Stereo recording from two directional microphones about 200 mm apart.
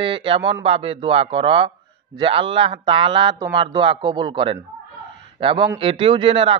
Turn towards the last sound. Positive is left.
turn(degrees=-25)  # may be behind; listen again after turning